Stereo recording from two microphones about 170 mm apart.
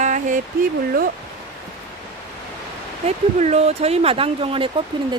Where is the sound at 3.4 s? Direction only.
40° right (ahead or behind).